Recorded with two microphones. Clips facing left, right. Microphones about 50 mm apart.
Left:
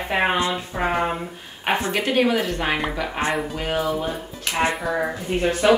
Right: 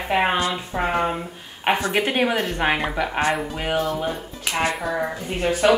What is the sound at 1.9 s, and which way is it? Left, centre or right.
A woman's voice, centre.